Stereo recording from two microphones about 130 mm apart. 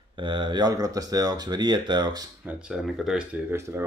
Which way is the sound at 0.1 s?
40° right (ahead or behind).